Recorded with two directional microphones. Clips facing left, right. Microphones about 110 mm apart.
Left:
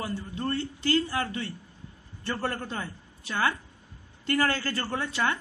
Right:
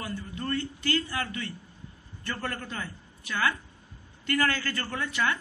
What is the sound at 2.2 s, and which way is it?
A woman's voice, 30° left (ahead or behind).